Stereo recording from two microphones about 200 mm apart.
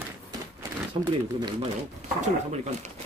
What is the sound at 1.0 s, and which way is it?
Speech, 30° right (ahead or behind).